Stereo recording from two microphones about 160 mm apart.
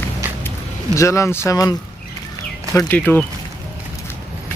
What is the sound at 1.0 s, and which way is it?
Speech, 20° left (ahead or behind).